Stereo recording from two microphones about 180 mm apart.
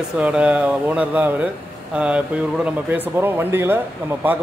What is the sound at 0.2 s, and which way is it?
Speech, 5° right (ahead or behind).